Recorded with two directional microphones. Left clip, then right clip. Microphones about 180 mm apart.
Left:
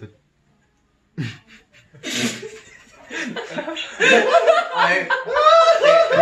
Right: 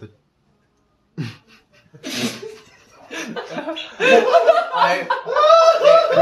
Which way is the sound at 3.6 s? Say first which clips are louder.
Right 1 dB; 55° right (ahead or behind).